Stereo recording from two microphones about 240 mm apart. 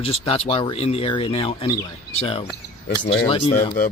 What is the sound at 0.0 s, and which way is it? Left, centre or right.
Speech, left.